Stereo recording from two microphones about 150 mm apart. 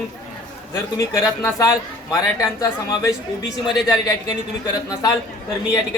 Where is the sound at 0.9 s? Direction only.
20° left (ahead or behind).